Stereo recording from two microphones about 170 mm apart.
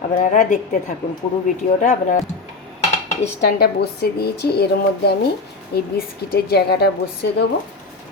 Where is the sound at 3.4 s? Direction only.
70° left (ahead or behind).